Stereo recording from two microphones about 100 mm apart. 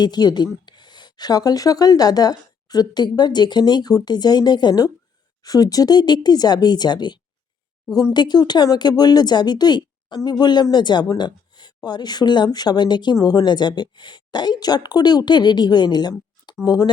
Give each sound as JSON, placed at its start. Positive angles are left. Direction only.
{"t": 0.0, "sound": "speech", "side_deg": 45}